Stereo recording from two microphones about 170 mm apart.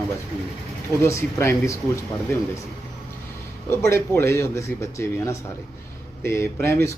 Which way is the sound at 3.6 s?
15° left (ahead or behind).